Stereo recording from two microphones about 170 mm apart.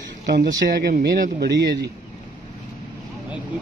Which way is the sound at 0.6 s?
60° right (ahead or behind).